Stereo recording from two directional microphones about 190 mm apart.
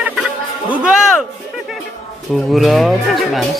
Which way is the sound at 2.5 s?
Centre (ahead or behind).